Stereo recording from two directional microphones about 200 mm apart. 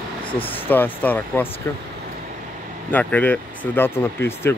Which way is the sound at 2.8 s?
10° left (ahead or behind).